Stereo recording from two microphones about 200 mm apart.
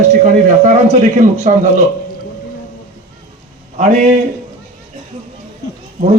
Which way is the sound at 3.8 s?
35° right (ahead or behind).